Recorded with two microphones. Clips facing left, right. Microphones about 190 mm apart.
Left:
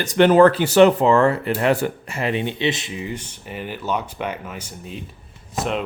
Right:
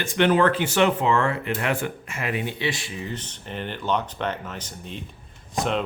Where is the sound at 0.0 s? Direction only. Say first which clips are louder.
Left 7 dB; 40° left (ahead or behind).